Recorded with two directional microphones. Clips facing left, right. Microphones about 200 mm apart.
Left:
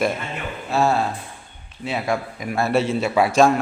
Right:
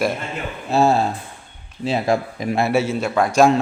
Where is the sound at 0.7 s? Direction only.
25° right (ahead or behind).